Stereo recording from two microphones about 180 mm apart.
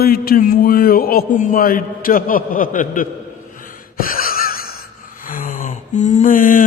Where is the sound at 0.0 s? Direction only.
55° left (ahead or behind).